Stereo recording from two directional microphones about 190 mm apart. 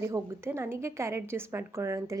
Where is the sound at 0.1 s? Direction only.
15° right (ahead or behind).